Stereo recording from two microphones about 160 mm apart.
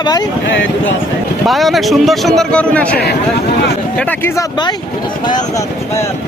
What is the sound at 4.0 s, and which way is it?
Speech, 10° left (ahead or behind).